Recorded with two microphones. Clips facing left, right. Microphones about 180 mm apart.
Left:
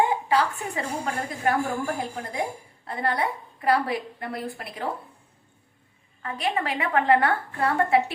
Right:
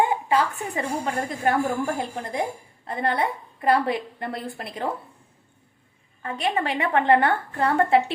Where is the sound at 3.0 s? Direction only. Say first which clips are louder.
Right 2 dB; 25° right (ahead or behind).